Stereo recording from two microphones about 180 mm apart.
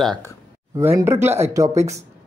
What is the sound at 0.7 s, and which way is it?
Speech, 15° right (ahead or behind).